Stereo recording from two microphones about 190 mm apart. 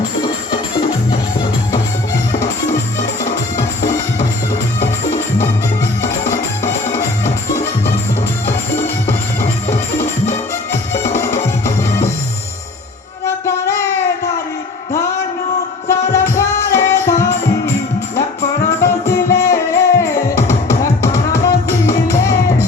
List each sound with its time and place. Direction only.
10.2 s music: 15° left (ahead or behind)
13.2 s music: 15° left (ahead or behind)
15.9 s music: 15° left (ahead or behind)
18.8 s music: 15° left (ahead or behind)